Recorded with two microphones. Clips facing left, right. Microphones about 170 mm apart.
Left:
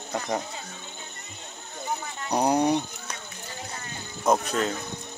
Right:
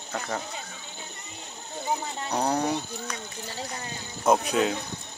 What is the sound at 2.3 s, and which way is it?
Speech, 15° left (ahead or behind).